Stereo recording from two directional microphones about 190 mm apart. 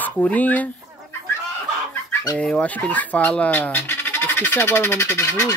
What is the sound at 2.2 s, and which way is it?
Speech, 5° left (ahead or behind).